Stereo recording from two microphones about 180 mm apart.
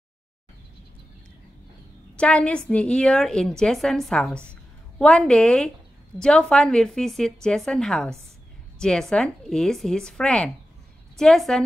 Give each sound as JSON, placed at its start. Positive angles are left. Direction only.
{"t": 2.1, "sound": "a woman's voice", "side_deg": 5}